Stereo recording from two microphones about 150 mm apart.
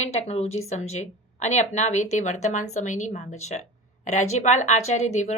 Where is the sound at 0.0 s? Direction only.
45° left (ahead or behind).